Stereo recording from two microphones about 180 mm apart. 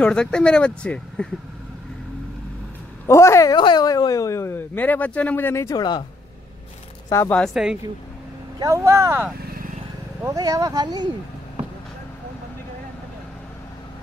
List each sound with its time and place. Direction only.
0.0 s speech: 5° left (ahead or behind)
3.1 s speech: 15° left (ahead or behind)
7.1 s speech: 15° left (ahead or behind)
7.3 s speech: centre (ahead or behind)
8.5 s speech: 20° right (ahead or behind)